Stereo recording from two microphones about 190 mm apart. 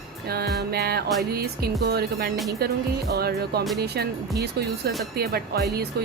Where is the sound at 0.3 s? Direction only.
55° right (ahead or behind).